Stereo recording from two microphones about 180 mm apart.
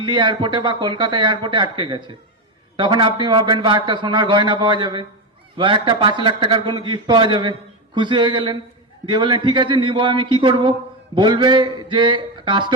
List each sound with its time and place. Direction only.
0.0 s a man's voice: 25° right (ahead or behind)